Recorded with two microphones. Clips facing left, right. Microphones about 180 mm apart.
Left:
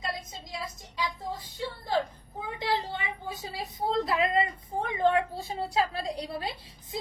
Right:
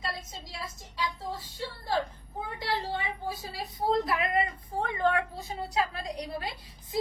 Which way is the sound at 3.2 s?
25° left (ahead or behind).